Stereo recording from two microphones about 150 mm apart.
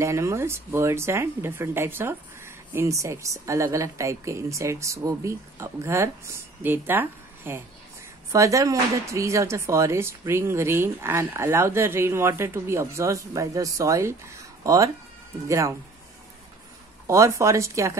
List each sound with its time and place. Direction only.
0.0 s speech: 20° right (ahead or behind)
17.1 s speech: 20° right (ahead or behind)